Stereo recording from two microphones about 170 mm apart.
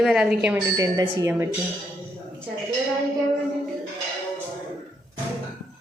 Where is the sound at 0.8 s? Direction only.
20° right (ahead or behind).